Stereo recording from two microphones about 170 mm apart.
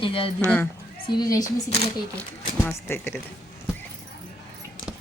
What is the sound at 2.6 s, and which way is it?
Speech, 15° left (ahead or behind).